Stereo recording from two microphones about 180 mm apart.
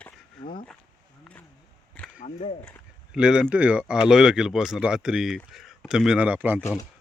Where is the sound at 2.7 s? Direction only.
5° right (ahead or behind).